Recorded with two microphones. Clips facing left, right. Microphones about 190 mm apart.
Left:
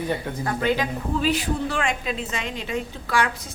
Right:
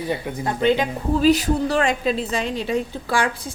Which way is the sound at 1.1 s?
40° right (ahead or behind).